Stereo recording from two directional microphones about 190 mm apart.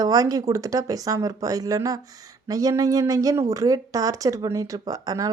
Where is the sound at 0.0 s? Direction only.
20° right (ahead or behind).